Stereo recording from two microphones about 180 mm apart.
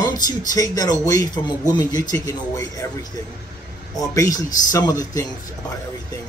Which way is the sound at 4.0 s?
20° left (ahead or behind).